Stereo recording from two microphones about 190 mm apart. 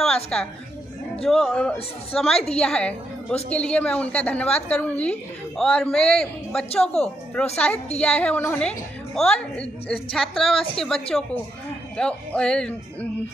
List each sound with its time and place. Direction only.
0.0 s a woman's voice: 5° left (ahead or behind)
6.7 s speech: 30° left (ahead or behind)
7.5 s a child's voice: 5° left (ahead or behind)
12.0 s a woman's voice: 5° left (ahead or behind)